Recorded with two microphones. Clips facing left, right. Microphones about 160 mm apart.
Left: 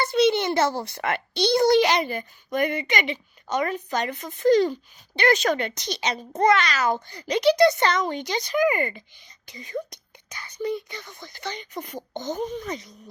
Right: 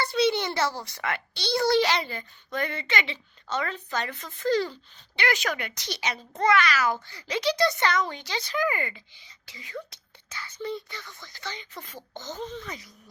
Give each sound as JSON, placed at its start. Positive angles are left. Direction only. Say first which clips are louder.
{"t": 0.0, "sound": "a child's voice", "louder": "left 4 dB", "side_deg": 20}
{"t": 0.7, "sound": "speech", "louder": "left 5 dB", "side_deg": 55}
{"t": 1.3, "sound": "a child's voice", "louder": "left 6 dB", "side_deg": 20}
{"t": 9.9, "sound": "whispering", "louder": "left 1 dB", "side_deg": 15}
{"t": 10.7, "sound": "a child's voice", "louder": "left 5 dB", "side_deg": 20}